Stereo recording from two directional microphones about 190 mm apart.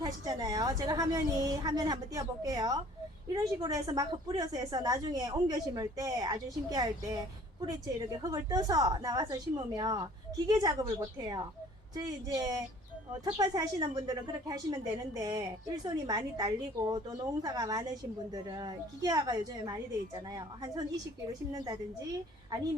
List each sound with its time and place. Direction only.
0.0 s a woman's voice: 20° right (ahead or behind)